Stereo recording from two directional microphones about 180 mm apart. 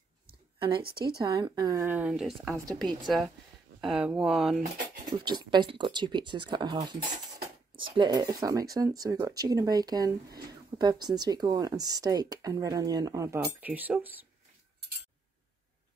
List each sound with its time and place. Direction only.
0.6 s speech: 30° right (ahead or behind); by 2.6 s centre (ahead or behind)
3.8 s speech: 5° right (ahead or behind)
5.1 s speech: 25° right (ahead or behind)